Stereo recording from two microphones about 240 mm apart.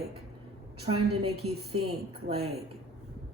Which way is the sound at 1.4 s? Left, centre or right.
Right.